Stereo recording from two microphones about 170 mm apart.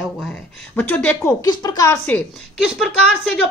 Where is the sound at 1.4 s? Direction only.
25° left (ahead or behind).